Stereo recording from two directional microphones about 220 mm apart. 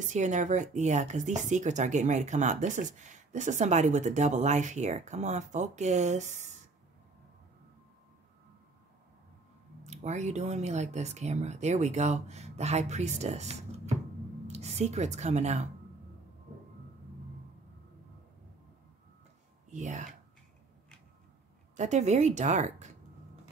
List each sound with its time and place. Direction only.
0.1 s speech: 35° right (ahead or behind)
9.8 s a woman's voice: 30° right (ahead or behind)
19.7 s speech: 35° right (ahead or behind)
21.7 s speech: 30° right (ahead or behind)